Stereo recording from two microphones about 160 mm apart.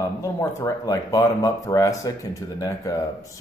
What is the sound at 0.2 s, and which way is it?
Speech, 20° left (ahead or behind).